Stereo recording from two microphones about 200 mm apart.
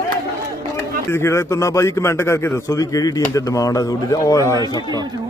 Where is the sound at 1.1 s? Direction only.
15° left (ahead or behind).